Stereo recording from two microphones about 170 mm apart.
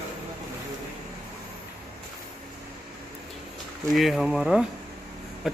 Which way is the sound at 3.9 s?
Centre (ahead or behind).